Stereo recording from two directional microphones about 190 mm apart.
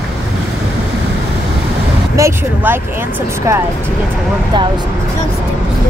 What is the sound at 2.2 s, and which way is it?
Speech, 15° right (ahead or behind).